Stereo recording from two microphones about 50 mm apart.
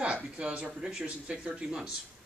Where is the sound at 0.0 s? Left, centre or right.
Right.